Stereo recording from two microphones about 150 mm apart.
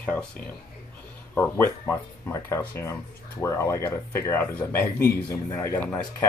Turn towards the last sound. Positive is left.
turn(degrees=15)  # may be behind; listen again after turning